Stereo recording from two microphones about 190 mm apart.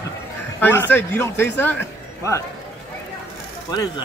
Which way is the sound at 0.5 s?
10° left (ahead or behind).